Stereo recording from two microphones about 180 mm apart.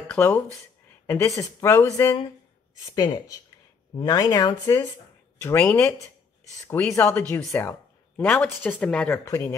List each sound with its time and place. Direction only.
0.1 s speech: 10° left (ahead or behind)